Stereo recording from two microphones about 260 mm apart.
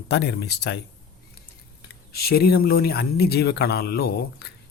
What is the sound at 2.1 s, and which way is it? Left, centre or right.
Speech, left.